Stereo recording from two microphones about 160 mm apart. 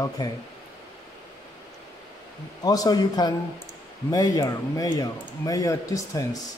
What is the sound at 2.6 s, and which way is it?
A man's voice, 25° left (ahead or behind).